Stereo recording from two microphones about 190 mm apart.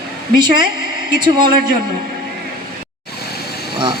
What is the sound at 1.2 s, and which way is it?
Speech, 25° right (ahead or behind).